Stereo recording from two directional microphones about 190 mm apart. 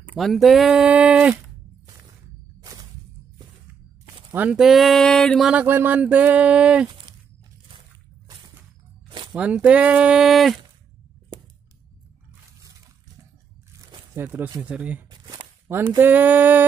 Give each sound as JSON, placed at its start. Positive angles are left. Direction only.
{"t": 0.1, "sound": "speech", "side_deg": 0}
{"t": 2.6, "sound": "whip", "side_deg": -20}
{"t": 4.3, "sound": "speech", "side_deg": -5}
{"t": 9.3, "sound": "speech", "side_deg": -5}
{"t": 14.1, "sound": "speech", "side_deg": -10}
{"t": 15.0, "sound": "a sound", "side_deg": -20}